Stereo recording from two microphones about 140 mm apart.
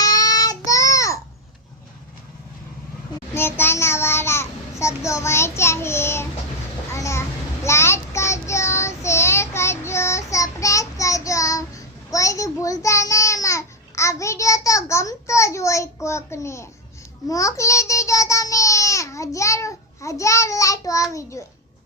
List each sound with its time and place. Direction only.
0.0 s child singing: 25° left (ahead or behind)
3.3 s a child's voice: 15° left (ahead or behind)
6.9 s child singing: 20° left (ahead or behind)